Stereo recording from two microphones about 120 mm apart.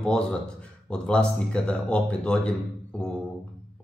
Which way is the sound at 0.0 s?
5° left (ahead or behind).